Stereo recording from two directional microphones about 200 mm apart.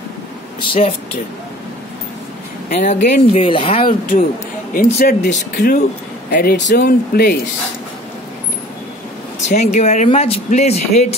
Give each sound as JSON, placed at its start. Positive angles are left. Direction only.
{"t": 0.6, "sound": "speech", "side_deg": 30}
{"t": 2.7, "sound": "speech", "side_deg": 40}
{"t": 3.8, "sound": "speech", "side_deg": 45}
{"t": 9.5, "sound": "speech", "side_deg": 35}